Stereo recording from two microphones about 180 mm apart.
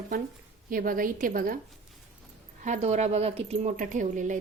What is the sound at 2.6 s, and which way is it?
Speech, 40° right (ahead or behind).